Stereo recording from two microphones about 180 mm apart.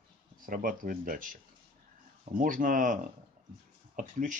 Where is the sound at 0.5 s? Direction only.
50° right (ahead or behind).